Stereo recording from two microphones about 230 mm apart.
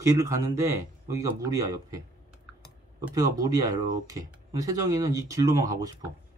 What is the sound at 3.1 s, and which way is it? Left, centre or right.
Speech, centre.